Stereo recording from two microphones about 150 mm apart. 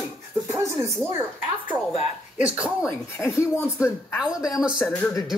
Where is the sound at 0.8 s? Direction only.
20° right (ahead or behind).